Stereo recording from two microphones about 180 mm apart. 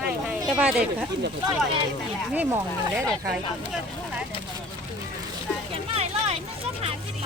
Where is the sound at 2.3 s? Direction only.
10° right (ahead or behind).